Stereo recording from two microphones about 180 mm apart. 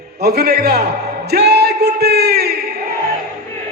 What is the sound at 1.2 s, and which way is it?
Music, 65° right (ahead or behind).